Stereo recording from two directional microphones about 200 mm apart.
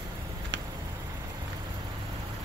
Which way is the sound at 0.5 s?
65° right (ahead or behind).